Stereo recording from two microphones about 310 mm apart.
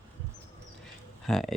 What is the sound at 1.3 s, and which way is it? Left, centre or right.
Speech, centre.